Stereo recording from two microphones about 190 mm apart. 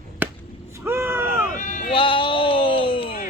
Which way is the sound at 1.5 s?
40° left (ahead or behind).